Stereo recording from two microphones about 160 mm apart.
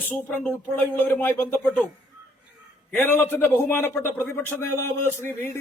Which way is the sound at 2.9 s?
10° left (ahead or behind).